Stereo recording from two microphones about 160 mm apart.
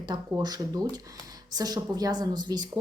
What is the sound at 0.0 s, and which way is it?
A woman's voice, 25° right (ahead or behind).